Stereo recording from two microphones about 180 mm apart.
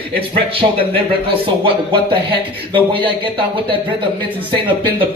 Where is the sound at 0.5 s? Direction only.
30° right (ahead or behind).